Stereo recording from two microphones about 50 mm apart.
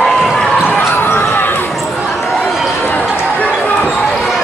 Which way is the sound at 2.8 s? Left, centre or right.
Left.